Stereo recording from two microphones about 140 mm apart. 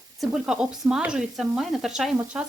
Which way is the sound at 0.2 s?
5° right (ahead or behind).